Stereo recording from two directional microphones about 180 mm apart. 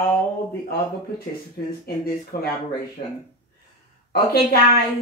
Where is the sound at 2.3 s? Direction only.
55° left (ahead or behind).